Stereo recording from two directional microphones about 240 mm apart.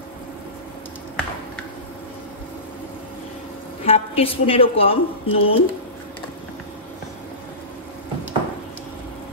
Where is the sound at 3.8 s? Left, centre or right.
Left.